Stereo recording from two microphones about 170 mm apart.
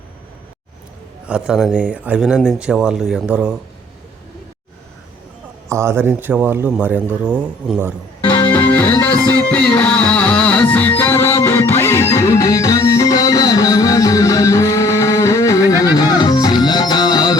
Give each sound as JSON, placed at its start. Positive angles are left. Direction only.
{"t": 1.3, "sound": "speech", "side_deg": -5}
{"t": 5.6, "sound": "speech", "side_deg": -15}
{"t": 8.3, "sound": "music", "side_deg": 10}